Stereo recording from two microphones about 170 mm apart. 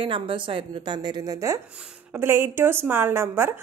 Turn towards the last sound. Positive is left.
turn(degrees=-15)  # may be behind; listen again after turning